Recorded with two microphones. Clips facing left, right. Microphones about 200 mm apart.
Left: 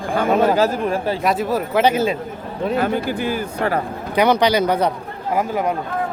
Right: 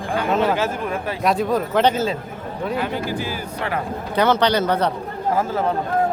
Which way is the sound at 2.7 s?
50° left (ahead or behind).